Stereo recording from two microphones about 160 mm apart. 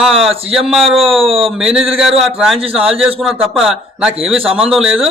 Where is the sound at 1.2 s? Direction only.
35° right (ahead or behind).